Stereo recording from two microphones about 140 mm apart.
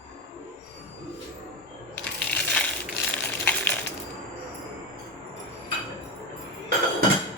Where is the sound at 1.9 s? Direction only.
10° left (ahead or behind).